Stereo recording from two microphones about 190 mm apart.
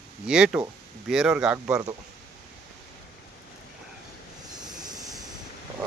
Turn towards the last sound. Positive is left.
turn(degrees=-20)  # may be behind; listen again after turning